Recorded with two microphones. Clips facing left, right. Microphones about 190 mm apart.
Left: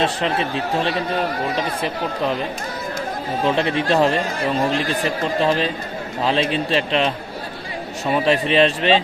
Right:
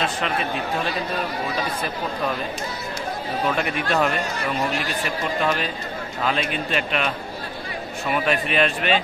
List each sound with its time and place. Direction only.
0.0 s speech: 30° left (ahead or behind)
3.4 s speech: 25° left (ahead or behind)